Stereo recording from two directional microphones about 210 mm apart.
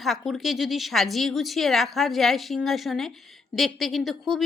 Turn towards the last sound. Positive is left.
turn(degrees=0)  # may be behind; listen again after turning